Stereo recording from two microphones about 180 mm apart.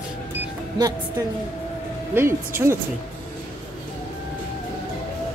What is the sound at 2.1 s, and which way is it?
Speech, 15° right (ahead or behind).